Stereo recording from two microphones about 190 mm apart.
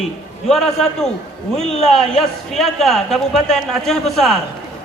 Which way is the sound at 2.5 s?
Centre (ahead or behind).